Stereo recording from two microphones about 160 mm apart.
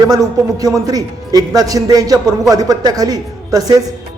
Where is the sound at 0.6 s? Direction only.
25° right (ahead or behind).